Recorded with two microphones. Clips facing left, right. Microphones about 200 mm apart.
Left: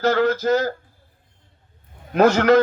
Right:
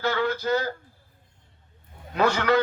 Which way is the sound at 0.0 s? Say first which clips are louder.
Left 7 dB; 45° left (ahead or behind).